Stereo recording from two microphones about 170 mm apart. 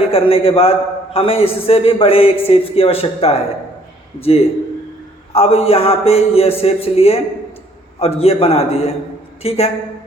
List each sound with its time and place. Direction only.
0.1 s a man's voice: 35° left (ahead or behind)